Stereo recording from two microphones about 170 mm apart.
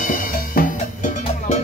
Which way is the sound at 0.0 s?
55° left (ahead or behind).